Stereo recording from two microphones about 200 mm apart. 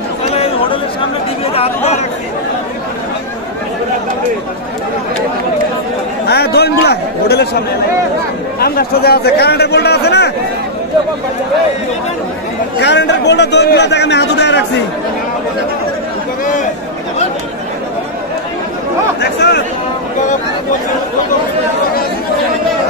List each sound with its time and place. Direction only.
0.3 s chatter: 30° left (ahead or behind)
1.5 s speech: 30° left (ahead or behind)
6.2 s a man's voice: 55° left (ahead or behind)
8.5 s a man's voice: 50° left (ahead or behind)
12.7 s a man's voice: 60° left (ahead or behind)
19.4 s a man's voice: 60° left (ahead or behind)